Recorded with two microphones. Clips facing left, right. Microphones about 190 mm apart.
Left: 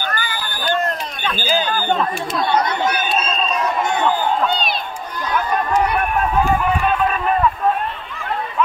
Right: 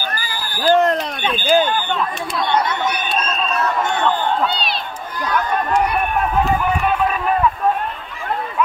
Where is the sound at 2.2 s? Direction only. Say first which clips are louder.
Right 1 dB; 5° left (ahead or behind).